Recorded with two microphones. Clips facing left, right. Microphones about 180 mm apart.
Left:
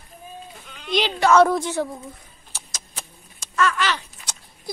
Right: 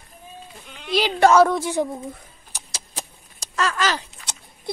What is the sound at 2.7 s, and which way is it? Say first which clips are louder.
Vehicle: right 6 dB; 35° right (ahead or behind).